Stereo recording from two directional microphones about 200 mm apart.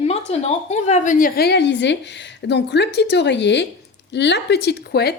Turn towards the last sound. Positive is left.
turn(degrees=55)  # may be behind; listen again after turning